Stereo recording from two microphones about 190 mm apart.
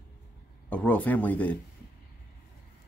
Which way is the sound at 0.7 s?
10° left (ahead or behind).